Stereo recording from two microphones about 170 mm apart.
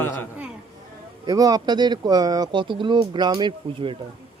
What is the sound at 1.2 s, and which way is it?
Speech, 20° right (ahead or behind).